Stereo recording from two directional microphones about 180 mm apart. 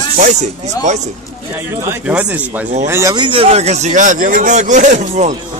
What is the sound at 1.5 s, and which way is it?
A man's voice, 15° right (ahead or behind).